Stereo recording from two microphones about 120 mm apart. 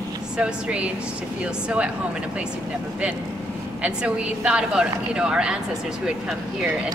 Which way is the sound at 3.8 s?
10° right (ahead or behind).